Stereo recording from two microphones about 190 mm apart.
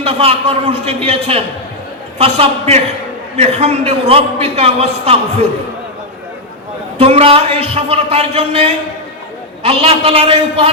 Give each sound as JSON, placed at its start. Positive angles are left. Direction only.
{"t": 0.0, "sound": "a man's voice", "side_deg": -30}
{"t": 7.0, "sound": "a man's voice", "side_deg": -30}